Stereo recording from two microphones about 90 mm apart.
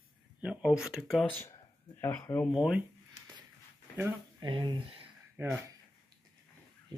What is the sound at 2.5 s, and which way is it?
Speech, 5° right (ahead or behind).